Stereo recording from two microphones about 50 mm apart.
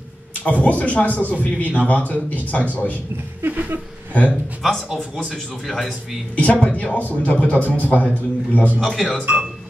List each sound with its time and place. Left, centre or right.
0.4 s speech: left
3.4 s a sound: right
4.1 s speech: left
4.6 s a man's voice: centre
6.3 s speech: left
8.8 s speech: centre